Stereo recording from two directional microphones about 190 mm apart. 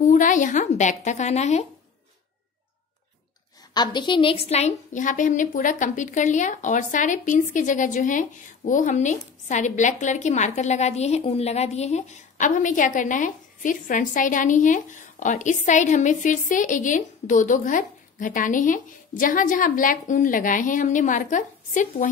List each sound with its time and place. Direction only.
0.0 s a woman's voice: 40° left (ahead or behind)
3.7 s a woman's voice: 20° left (ahead or behind); by 22.1 s 40° left (ahead or behind)